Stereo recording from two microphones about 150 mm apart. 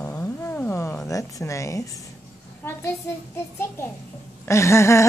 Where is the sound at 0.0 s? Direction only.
20° left (ahead or behind).